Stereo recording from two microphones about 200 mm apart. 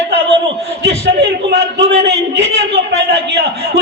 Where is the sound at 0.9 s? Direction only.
65° right (ahead or behind).